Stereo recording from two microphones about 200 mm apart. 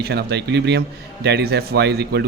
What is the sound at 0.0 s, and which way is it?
Speech, 55° right (ahead or behind).